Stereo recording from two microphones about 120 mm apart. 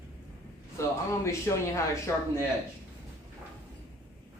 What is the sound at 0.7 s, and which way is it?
Speech, 25° left (ahead or behind).